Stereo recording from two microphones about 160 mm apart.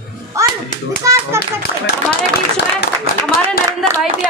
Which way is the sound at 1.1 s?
20° right (ahead or behind).